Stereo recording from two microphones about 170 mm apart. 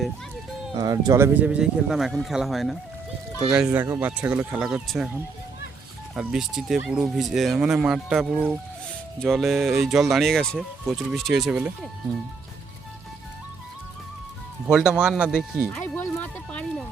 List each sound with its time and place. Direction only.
0.7 s speech: 25° right (ahead or behind); by 11.9 s 5° right (ahead or behind)
14.7 s speech: 5° right (ahead or behind)
15.7 s music: 10° left (ahead or behind)